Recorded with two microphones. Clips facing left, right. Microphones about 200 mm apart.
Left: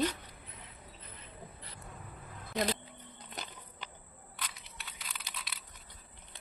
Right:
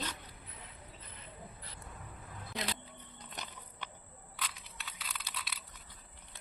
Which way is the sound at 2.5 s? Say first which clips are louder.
Left 8 dB; 50° left (ahead or behind).